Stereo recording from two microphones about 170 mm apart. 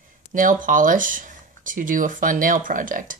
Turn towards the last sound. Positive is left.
turn(degrees=-50)  # may be behind; listen again after turning